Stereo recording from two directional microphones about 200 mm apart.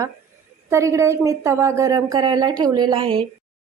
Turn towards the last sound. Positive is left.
turn(degrees=-25)  # may be behind; listen again after turning